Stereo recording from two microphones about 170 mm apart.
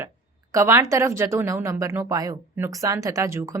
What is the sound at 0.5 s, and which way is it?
Speech, 15° right (ahead or behind).